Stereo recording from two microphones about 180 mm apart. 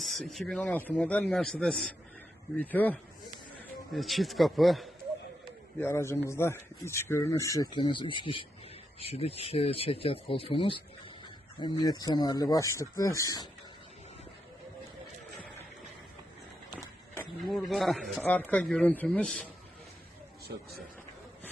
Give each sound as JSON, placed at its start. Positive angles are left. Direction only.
{"t": 0.0, "sound": "a man's voice", "side_deg": 0}
{"t": 5.8, "sound": "a man's voice", "side_deg": 15}
{"t": 17.4, "sound": "speech", "side_deg": 0}